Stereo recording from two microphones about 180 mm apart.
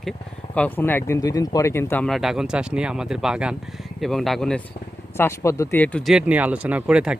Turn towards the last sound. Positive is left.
turn(degrees=-5)  # may be behind; listen again after turning